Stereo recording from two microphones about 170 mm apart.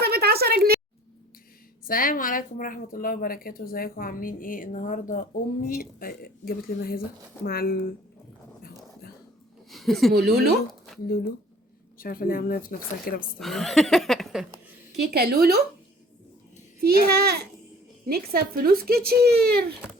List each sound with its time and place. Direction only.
0.0 s a sound: 70° right (ahead or behind)
1.8 s speech: 55° left (ahead or behind)
9.6 s a sound: centre (ahead or behind)
10.2 s speech: 70° right (ahead or behind)
10.7 s a sound: centre (ahead or behind)
11.0 s speech: 65° left (ahead or behind)
13.4 s speech: centre (ahead or behind)
15.1 s speech: 65° right (ahead or behind)
17.1 s speech: 65° right (ahead or behind)